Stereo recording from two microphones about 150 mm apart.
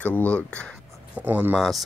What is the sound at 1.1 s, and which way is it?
Speech, 10° right (ahead or behind).